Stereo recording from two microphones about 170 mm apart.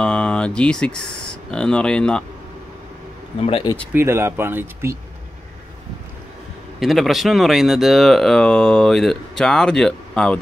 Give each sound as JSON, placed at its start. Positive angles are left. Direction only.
{"t": 0.0, "sound": "speech", "side_deg": 5}
{"t": 3.4, "sound": "speech", "side_deg": 30}
{"t": 3.9, "sound": "speech", "side_deg": -15}
{"t": 6.8, "sound": "speech", "side_deg": 0}